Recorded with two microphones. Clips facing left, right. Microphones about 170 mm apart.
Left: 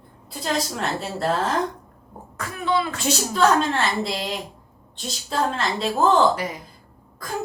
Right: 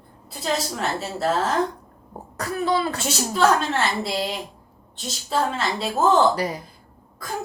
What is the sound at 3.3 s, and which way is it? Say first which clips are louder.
Speech: even; centre (ahead or behind).